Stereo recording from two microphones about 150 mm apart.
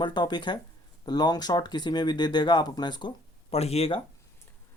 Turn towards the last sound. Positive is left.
turn(degrees=40)  # may be behind; listen again after turning